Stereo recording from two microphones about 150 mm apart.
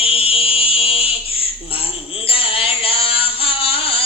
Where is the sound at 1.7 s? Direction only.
40° left (ahead or behind).